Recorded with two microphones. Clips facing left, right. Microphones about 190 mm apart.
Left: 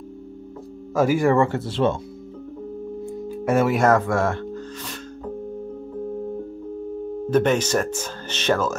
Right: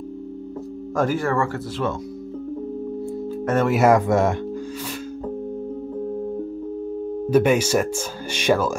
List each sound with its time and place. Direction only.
0.9 s speech: 10° left (ahead or behind); by 2.0 s 25° left (ahead or behind)
3.1 s music: 10° left (ahead or behind)
3.7 s speech: 10° right (ahead or behind)
7.2 s speech: 10° right (ahead or behind)